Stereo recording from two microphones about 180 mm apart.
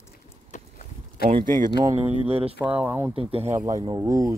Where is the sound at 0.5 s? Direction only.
40° left (ahead or behind).